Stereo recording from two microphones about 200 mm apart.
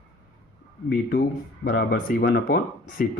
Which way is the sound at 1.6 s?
45° left (ahead or behind).